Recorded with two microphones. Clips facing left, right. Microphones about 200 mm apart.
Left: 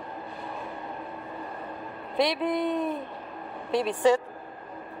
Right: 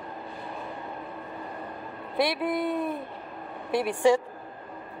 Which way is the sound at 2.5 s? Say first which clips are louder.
Left 1 dB; 15° left (ahead or behind).